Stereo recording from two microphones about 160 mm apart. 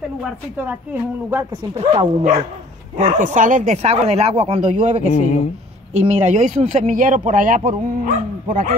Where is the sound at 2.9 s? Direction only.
55° right (ahead or behind).